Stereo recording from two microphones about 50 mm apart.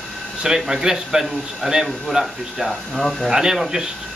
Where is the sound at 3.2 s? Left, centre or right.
Centre.